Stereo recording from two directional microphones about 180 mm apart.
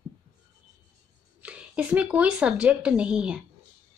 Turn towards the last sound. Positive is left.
turn(degrees=-5)  # may be behind; listen again after turning